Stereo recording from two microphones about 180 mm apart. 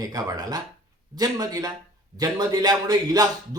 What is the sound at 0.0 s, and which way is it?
Speech, 20° right (ahead or behind).